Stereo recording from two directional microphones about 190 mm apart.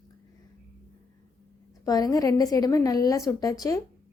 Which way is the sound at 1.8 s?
20° left (ahead or behind).